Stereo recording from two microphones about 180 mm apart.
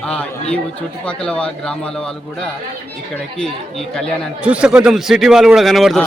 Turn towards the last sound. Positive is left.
turn(degrees=0)  # may be behind; listen again after turning